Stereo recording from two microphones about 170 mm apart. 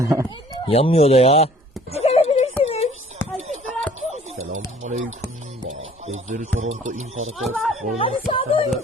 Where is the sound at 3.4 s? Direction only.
40° right (ahead or behind).